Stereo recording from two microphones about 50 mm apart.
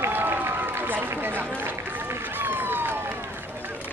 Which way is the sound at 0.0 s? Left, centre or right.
Right.